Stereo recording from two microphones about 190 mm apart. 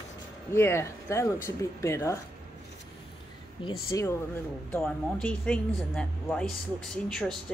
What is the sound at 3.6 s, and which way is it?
Speech, 25° left (ahead or behind).